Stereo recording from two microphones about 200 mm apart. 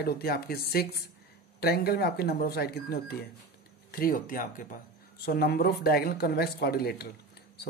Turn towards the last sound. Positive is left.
turn(degrees=50)  # may be behind; listen again after turning